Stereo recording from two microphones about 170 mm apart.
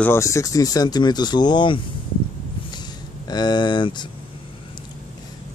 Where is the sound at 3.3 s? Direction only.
25° left (ahead or behind).